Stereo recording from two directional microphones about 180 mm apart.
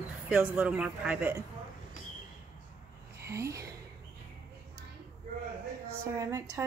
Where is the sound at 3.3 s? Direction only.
15° right (ahead or behind).